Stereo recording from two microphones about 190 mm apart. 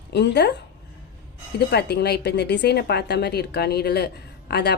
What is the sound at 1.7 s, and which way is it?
A woman's voice, 60° left (ahead or behind).